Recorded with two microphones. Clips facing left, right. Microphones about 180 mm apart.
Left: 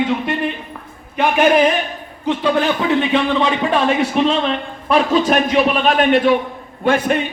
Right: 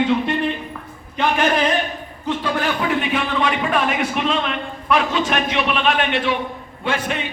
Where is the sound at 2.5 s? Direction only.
25° left (ahead or behind).